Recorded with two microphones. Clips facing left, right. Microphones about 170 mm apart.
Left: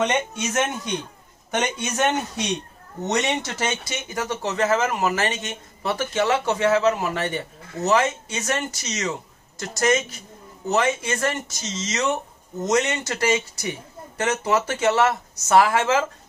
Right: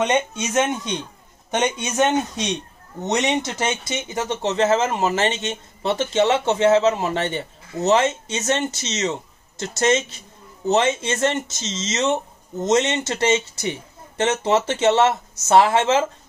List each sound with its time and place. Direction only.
0.0 s speech: 20° right (ahead or behind)